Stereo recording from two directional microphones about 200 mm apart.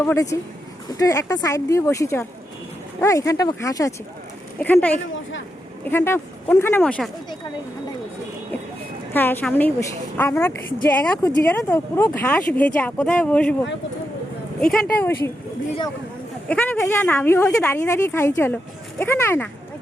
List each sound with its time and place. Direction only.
0.0 s speech: 15° left (ahead or behind)
9.1 s speech: 10° left (ahead or behind)
14.6 s speech: 5° left (ahead or behind)
16.5 s speech: 10° left (ahead or behind)